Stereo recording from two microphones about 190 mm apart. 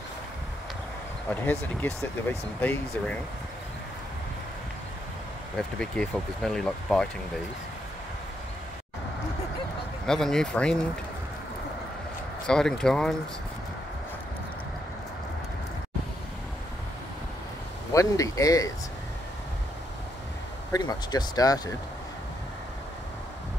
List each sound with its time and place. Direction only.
1.3 s speech: 10° left (ahead or behind)
5.8 s speech: 5° left (ahead or behind)
10.0 s speech: 5° left (ahead or behind)
12.4 s speech: 5° left (ahead or behind)
17.9 s speech: 15° left (ahead or behind)
20.7 s speech: 20° left (ahead or behind)